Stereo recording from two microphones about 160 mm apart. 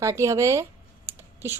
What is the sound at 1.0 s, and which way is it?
Computer keyboard, 15° right (ahead or behind).